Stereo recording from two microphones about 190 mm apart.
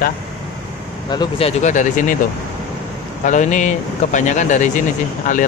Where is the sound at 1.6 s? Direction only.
40° left (ahead or behind).